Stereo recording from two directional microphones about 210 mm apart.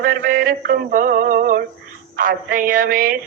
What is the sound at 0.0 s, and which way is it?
Music, 45° right (ahead or behind).